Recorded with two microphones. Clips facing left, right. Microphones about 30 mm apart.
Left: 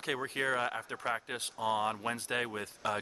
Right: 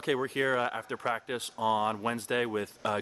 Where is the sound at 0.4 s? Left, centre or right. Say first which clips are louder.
Right 4 dB; centre.